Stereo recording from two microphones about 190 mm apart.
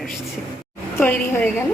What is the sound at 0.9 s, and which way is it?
Speech, 10° left (ahead or behind).